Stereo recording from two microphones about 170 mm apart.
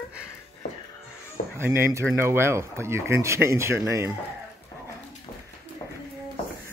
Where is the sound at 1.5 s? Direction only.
15° right (ahead or behind).